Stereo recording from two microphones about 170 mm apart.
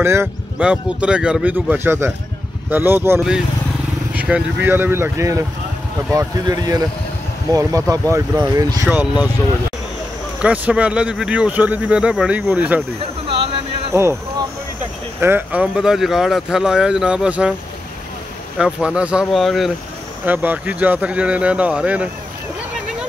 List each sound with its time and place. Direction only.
0.0 s speech: 15° right (ahead or behind)
7.9 s speech: 20° right (ahead or behind)
10.4 s speech: 10° right (ahead or behind)
13.9 s speech: 15° right (ahead or behind)
15.1 s speech: 10° right (ahead or behind)
18.6 s speech: 5° right (ahead or behind)